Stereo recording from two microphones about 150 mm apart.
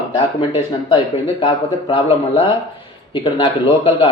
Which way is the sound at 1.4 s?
35° left (ahead or behind).